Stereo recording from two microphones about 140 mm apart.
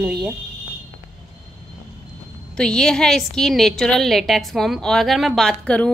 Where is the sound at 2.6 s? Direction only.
5° left (ahead or behind).